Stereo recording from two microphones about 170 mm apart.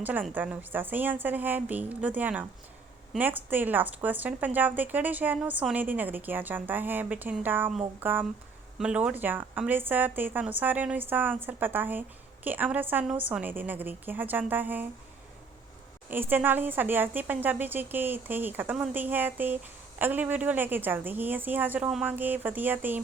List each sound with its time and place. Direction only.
0.0 s speech: 10° right (ahead or behind)
16.0 s speech: 10° right (ahead or behind)